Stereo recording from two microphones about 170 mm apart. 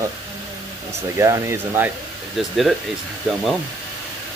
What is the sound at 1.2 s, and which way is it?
Speech, 15° right (ahead or behind).